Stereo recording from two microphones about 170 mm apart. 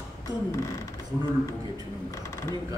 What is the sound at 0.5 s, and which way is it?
Speech, 20° left (ahead or behind).